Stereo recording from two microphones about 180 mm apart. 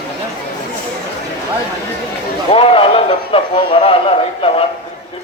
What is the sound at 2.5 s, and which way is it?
A man's voice, 30° left (ahead or behind).